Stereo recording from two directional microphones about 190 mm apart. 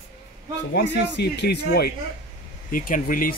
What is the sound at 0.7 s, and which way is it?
Speech, 65° left (ahead or behind).